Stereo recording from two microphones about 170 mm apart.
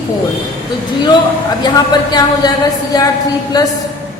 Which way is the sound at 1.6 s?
25° left (ahead or behind).